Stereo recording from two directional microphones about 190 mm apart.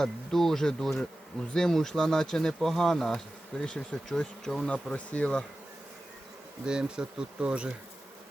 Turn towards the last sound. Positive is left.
turn(degrees=-5)  # may be behind; listen again after turning